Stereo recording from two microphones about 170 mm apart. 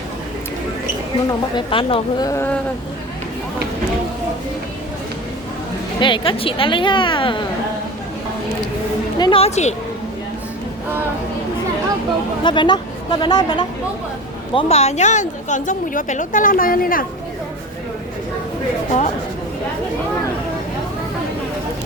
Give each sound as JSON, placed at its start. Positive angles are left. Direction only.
{"t": 1.3, "sound": "a woman's voice", "side_deg": 30}
{"t": 6.0, "sound": "a woman's voice", "side_deg": 30}
{"t": 9.1, "sound": "speech", "side_deg": 25}
{"t": 9.4, "sound": "a woman's voice", "side_deg": 40}
{"t": 12.4, "sound": "a woman's voice", "side_deg": 25}
{"t": 14.5, "sound": "a woman's voice", "side_deg": 40}
{"t": 18.9, "sound": "a woman's voice", "side_deg": 45}